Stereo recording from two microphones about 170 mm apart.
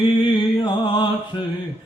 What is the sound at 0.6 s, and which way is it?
Music, 30° left (ahead or behind).